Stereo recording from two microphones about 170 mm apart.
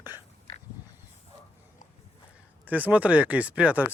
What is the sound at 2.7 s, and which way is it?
Speech, 10° right (ahead or behind).